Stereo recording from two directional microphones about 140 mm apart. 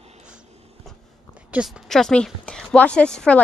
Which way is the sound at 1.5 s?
5° right (ahead or behind).